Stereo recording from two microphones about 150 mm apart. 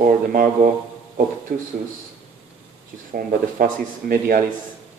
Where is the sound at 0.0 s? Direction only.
70° right (ahead or behind).